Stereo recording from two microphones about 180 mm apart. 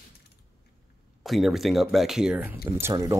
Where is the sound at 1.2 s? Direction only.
Centre (ahead or behind); by 3.1 s 15° right (ahead or behind).